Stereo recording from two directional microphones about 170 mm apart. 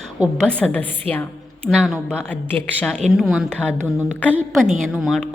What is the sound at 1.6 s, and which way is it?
A woman's voice, centre (ahead or behind).